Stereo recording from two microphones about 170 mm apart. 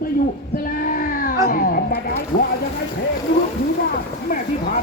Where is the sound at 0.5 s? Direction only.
55° left (ahead or behind).